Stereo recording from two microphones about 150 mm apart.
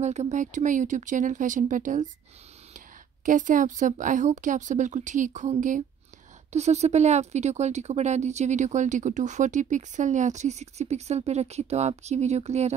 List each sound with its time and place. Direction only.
0.0 s speech: 50° right (ahead or behind)
3.3 s speech: 60° right (ahead or behind)